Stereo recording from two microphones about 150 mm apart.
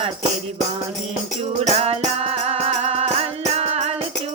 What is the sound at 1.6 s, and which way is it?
Music, 45° right (ahead or behind).